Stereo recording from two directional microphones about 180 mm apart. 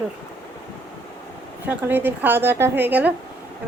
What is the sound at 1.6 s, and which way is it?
A woman's voice, 10° right (ahead or behind).